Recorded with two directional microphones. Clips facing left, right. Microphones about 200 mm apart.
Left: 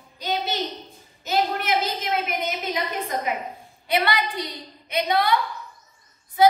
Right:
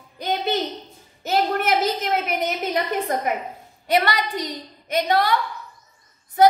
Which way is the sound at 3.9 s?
45° right (ahead or behind).